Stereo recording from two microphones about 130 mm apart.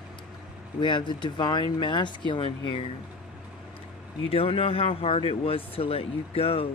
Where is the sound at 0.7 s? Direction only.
35° left (ahead or behind).